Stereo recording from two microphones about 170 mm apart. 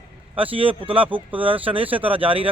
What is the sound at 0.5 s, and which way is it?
A man's voice, 30° right (ahead or behind).